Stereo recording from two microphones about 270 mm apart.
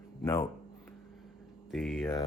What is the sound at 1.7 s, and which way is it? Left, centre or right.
Speech, centre.